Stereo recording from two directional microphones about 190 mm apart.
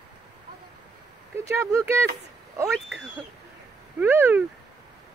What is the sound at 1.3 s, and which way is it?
Speech, 15° right (ahead or behind).